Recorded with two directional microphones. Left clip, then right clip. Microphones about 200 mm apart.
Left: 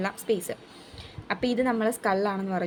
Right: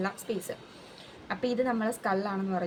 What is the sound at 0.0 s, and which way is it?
Speech, 45° left (ahead or behind).